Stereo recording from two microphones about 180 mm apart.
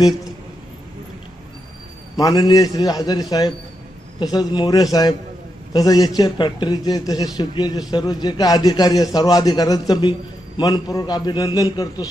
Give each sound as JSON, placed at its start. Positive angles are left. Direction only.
{"t": 2.1, "sound": "a man's voice", "side_deg": 20}